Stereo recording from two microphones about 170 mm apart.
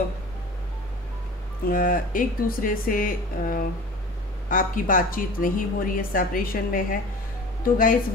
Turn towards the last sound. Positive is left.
turn(degrees=55)  # may be behind; listen again after turning